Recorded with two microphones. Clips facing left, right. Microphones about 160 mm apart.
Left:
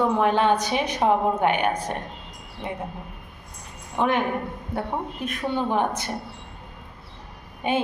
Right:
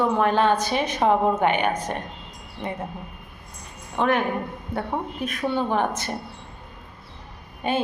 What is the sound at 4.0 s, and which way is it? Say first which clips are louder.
Speech: right 1 dB; 15° left (ahead or behind).